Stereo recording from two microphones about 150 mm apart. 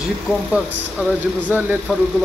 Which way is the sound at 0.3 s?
Centre (ahead or behind).